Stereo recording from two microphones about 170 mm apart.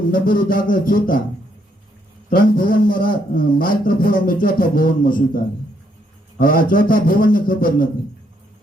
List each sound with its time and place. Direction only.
0.1 s a man's voice: 55° left (ahead or behind)
2.3 s a man's voice: 55° left (ahead or behind)
6.4 s a man's voice: 55° left (ahead or behind)